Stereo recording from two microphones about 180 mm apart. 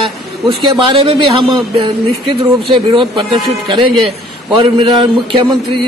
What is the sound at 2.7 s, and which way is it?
Speech, 25° right (ahead or behind).